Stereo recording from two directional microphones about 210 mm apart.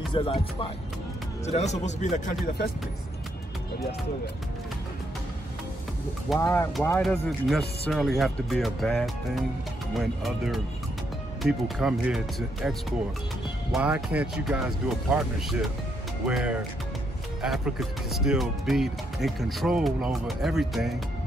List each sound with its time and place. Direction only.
0.1 s speech: 25° left (ahead or behind); by 2.7 s 45° left (ahead or behind)
6.4 s speech: 10° left (ahead or behind)